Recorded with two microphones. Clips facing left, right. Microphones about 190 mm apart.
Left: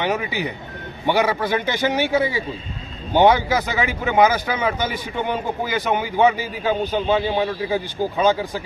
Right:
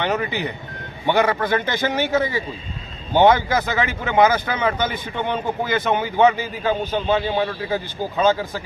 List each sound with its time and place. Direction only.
0.0 s speech: 10° left (ahead or behind)